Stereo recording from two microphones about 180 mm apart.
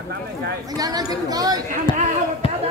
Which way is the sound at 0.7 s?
20° right (ahead or behind).